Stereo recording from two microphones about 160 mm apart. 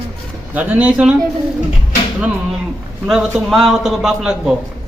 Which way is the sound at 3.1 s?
5° right (ahead or behind).